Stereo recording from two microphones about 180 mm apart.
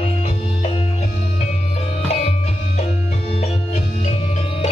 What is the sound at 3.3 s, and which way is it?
Music, 35° left (ahead or behind).